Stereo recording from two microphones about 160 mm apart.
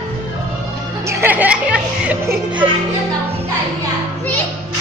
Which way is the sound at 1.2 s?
10° right (ahead or behind).